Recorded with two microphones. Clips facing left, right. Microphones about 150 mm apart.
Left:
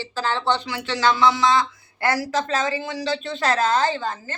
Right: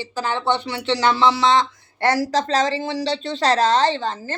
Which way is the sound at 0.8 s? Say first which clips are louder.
Right 2 dB; 30° right (ahead or behind).